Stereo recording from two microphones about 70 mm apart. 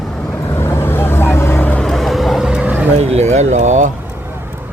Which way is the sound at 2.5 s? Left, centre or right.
Centre.